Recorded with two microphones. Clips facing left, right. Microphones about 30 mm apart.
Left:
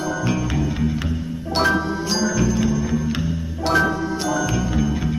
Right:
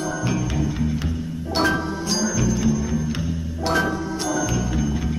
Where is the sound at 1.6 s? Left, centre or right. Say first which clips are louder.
Left 2 dB; centre.